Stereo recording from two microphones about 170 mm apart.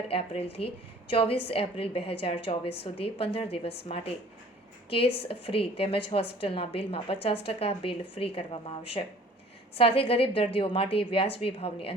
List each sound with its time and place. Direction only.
0.1 s a woman's voice: 35° left (ahead or behind)